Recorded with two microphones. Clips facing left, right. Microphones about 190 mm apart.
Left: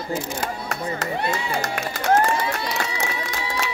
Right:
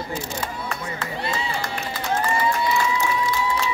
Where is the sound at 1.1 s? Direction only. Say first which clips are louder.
Even; 65° left (ahead or behind).